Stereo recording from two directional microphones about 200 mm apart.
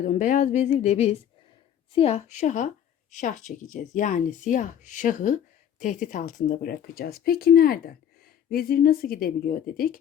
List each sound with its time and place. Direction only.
0.0 s speech: 35° left (ahead or behind)